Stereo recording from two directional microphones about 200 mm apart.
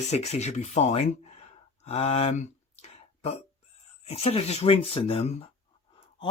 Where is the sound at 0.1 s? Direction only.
35° left (ahead or behind).